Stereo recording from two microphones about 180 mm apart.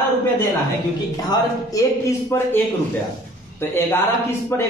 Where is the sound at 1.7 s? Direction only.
20° left (ahead or behind).